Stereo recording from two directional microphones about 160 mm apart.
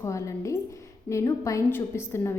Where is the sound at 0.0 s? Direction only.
20° left (ahead or behind).